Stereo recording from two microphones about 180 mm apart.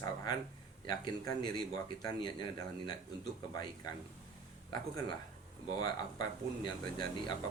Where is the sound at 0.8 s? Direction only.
20° left (ahead or behind).